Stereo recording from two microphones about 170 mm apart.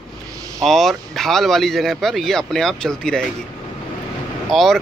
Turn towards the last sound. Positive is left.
turn(degrees=0)  # may be behind; listen again after turning